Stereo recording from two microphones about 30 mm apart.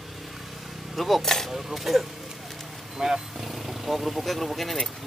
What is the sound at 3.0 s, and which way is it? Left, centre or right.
Speech, centre.